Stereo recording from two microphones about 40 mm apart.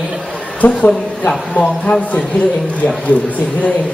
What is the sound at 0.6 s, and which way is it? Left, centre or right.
Speech, left.